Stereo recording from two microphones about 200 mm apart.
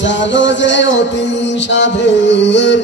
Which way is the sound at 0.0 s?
65° left (ahead or behind).